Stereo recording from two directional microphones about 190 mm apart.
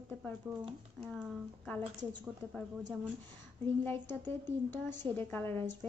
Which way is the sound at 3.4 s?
10° left (ahead or behind).